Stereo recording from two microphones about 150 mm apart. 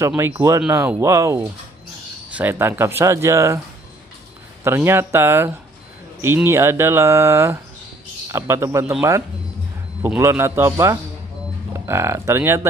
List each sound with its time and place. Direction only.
0.2 s speech: 20° right (ahead or behind)
4.6 s speech: 15° right (ahead or behind)
10.0 s speech: 15° right (ahead or behind)